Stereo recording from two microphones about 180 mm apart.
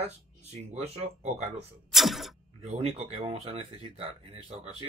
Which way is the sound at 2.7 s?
35° right (ahead or behind).